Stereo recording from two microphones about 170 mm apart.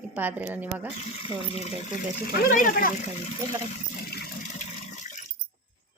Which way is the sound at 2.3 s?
55° left (ahead or behind).